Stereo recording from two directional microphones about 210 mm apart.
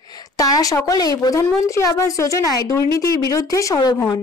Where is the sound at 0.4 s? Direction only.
15° left (ahead or behind).